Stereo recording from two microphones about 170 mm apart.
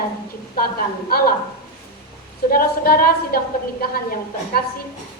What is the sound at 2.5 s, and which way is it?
A woman's voice, 60° left (ahead or behind).